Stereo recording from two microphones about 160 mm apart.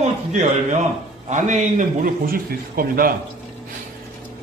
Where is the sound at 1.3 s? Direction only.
50° right (ahead or behind); by 3.2 s 65° right (ahead or behind).